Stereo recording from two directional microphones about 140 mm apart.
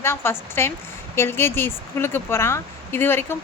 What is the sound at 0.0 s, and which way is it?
A woman's voice, 15° left (ahead or behind).